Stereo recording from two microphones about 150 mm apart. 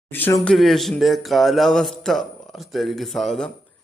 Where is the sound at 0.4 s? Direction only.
Centre (ahead or behind).